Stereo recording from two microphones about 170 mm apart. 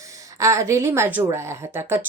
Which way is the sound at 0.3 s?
20° right (ahead or behind).